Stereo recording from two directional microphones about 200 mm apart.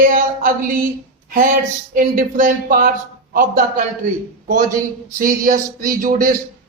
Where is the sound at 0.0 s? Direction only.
45° right (ahead or behind).